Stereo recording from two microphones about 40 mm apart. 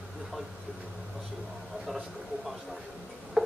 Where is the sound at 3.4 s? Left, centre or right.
Centre.